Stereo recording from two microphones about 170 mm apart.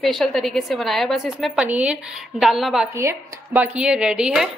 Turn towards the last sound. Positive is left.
turn(degrees=-5)  # may be behind; listen again after turning